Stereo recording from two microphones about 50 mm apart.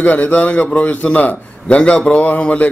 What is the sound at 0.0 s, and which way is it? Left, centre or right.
A man's voice, left.